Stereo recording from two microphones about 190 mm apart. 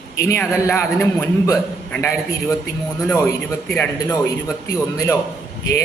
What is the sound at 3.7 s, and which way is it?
A man's voice, 20° left (ahead or behind).